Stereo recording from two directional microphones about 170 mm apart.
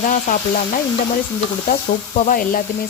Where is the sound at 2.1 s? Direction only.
50° left (ahead or behind).